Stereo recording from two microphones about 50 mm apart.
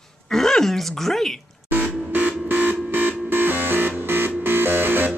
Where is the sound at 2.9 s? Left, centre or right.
Right.